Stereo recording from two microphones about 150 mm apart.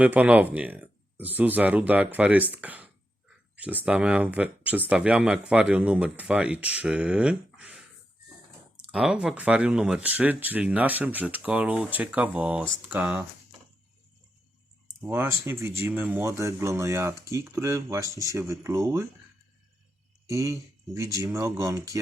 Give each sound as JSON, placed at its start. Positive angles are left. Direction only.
{"t": 0.0, "sound": "speech", "side_deg": -10}
{"t": 8.9, "sound": "speech", "side_deg": -5}
{"t": 15.0, "sound": "speech", "side_deg": -15}
{"t": 20.2, "sound": "speech", "side_deg": -20}